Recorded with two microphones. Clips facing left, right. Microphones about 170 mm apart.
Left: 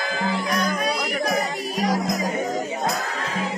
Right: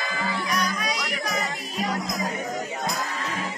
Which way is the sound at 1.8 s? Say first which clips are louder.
Left 5 dB; 75° left (ahead or behind).